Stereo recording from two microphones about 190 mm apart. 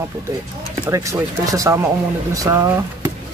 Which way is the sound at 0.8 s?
15° right (ahead or behind).